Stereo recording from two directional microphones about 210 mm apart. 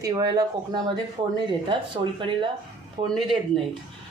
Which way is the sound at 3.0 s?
30° right (ahead or behind).